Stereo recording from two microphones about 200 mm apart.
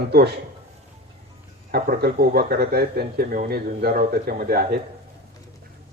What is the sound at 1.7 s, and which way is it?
Speech, 50° right (ahead or behind).